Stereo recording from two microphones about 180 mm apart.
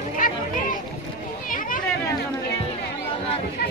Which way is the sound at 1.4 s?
50° left (ahead or behind).